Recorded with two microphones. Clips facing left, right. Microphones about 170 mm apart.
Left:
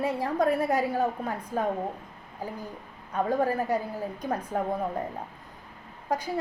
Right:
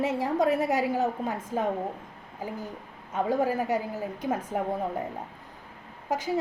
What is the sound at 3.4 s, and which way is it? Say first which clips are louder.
Speech: even; 15° right (ahead or behind).